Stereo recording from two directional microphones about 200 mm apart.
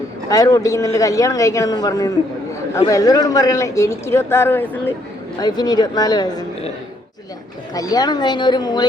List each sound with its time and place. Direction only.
0.3 s speech: 15° left (ahead or behind)
5.4 s speech: 20° left (ahead or behind)
7.7 s speech: 20° left (ahead or behind)